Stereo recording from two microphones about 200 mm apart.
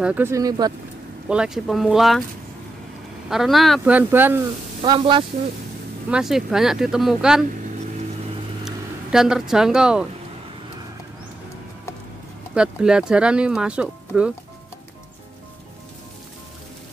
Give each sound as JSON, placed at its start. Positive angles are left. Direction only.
{"t": 0.0, "sound": "speech", "side_deg": -10}
{"t": 1.3, "sound": "speech", "side_deg": -5}
{"t": 3.3, "sound": "speech", "side_deg": 0}
{"t": 4.8, "sound": "speech", "side_deg": -25}
{"t": 6.0, "sound": "speech", "side_deg": -5}
{"t": 8.6, "sound": "speech", "side_deg": 0}
{"t": 12.5, "sound": "speech", "side_deg": -5}